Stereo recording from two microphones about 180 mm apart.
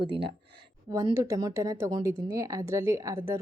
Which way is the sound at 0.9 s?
20° right (ahead or behind).